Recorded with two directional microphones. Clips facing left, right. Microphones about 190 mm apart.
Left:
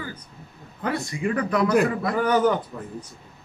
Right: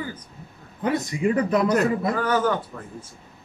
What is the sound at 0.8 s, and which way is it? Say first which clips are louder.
Speech: right 3 dB; 20° right (ahead or behind).